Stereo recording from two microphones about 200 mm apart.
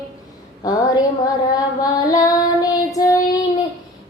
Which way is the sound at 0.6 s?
20° left (ahead or behind).